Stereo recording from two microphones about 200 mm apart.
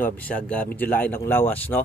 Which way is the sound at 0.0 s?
5° left (ahead or behind).